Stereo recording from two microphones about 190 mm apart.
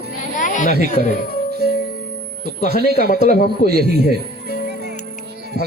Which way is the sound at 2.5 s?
55° right (ahead or behind).